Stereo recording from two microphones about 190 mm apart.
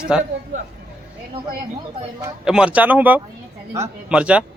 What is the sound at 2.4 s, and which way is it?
Speech, 5° right (ahead or behind).